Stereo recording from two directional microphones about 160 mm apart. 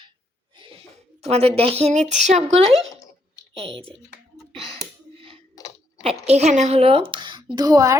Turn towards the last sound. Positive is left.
turn(degrees=-20)  # may be behind; listen again after turning